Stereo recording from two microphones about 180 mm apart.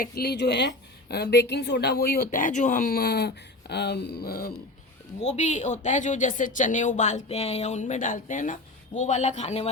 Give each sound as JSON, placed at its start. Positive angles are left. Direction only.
{"t": 0.0, "sound": "a woman's voice", "side_deg": 60}
{"t": 5.4, "sound": "speech", "side_deg": 40}